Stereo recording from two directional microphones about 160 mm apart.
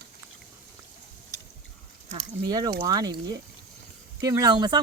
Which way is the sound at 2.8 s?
25° right (ahead or behind).